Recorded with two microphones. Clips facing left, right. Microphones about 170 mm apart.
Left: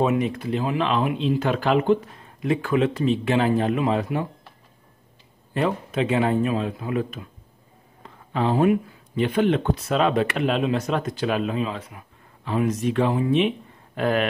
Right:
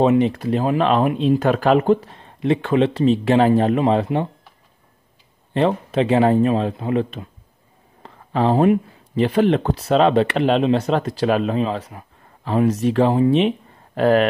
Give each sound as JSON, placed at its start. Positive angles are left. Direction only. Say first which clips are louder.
{"t": 0.0, "sound": "speech", "louder": "right 6 dB", "side_deg": -30}
{"t": 5.5, "sound": "speech", "louder": "right 5 dB", "side_deg": -30}